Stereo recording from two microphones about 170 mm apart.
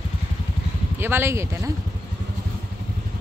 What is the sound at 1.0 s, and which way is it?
Speech, 15° right (ahead or behind).